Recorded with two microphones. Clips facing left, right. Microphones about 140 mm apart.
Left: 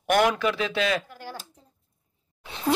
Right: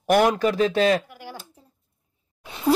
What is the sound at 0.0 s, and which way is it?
Speech, 35° right (ahead or behind).